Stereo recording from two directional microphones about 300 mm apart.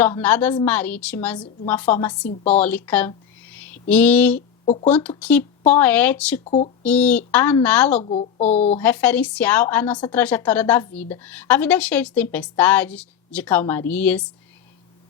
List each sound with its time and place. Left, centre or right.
0.0 s a woman's voice: centre
4.6 s speech: centre
4.9 s a woman's voice: centre
6.4 s speech: left
6.8 s a woman's voice: centre
8.0 s speech: left
8.8 s a woman's voice: centre